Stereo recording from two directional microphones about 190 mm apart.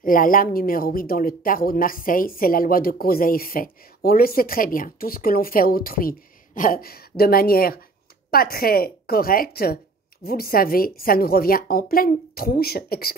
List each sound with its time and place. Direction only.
0.0 s speech: 45° left (ahead or behind)